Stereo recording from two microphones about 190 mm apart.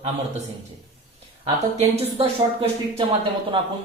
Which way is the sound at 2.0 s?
30° right (ahead or behind).